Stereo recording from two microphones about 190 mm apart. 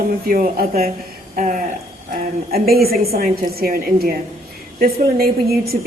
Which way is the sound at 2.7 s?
55° right (ahead or behind).